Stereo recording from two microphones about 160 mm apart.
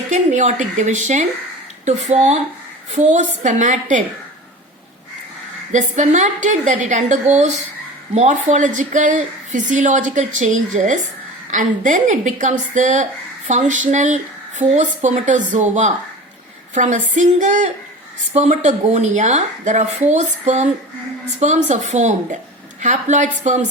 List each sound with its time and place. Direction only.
0.1 s a woman's voice: 50° right (ahead or behind)
5.7 s a woman's voice: 50° right (ahead or behind)